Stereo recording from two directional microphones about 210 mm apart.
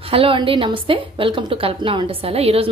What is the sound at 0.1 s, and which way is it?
A woman's voice, 25° right (ahead or behind).